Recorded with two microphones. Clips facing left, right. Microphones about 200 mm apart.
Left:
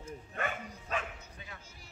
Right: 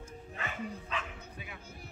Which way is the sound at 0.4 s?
45° left (ahead or behind).